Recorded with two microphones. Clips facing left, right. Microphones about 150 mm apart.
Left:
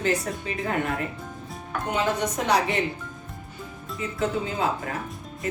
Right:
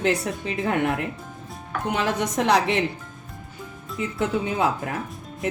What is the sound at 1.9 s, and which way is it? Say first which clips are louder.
Speech: right 1 dB; 80° right.